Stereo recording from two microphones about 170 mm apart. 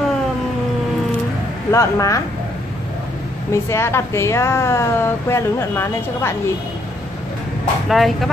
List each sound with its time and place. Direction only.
1.7 s speech: 20° left (ahead or behind)
3.5 s a woman's voice: 15° left (ahead or behind)
7.9 s speech: centre (ahead or behind)